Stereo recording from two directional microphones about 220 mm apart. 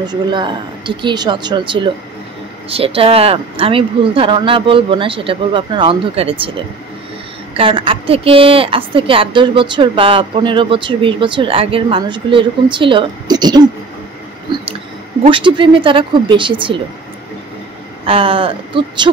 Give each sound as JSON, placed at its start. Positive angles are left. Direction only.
{"t": 0.0, "sound": "a woman's voice", "side_deg": -20}
{"t": 14.5, "sound": "a sound", "side_deg": -20}
{"t": 15.2, "sound": "a woman's voice", "side_deg": -20}
{"t": 18.0, "sound": "a woman's voice", "side_deg": -25}